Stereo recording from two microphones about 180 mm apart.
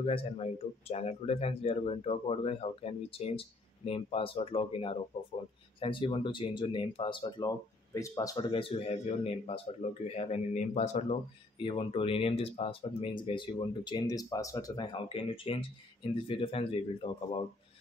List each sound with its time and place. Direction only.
0.0 s speech: 30° left (ahead or behind)
11.5 s speech: 30° left (ahead or behind)